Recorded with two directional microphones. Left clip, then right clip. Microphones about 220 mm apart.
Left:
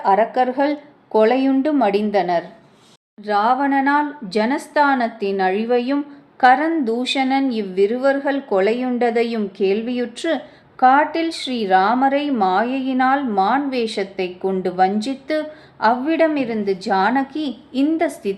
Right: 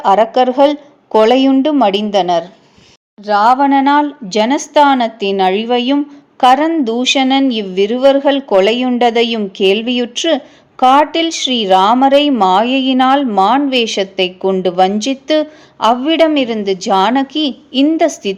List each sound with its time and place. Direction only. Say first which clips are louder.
0.0 s speech: right 6 dB; 35° right (ahead or behind)